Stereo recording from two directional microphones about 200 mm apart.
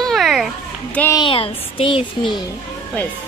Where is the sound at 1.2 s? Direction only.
25° left (ahead or behind).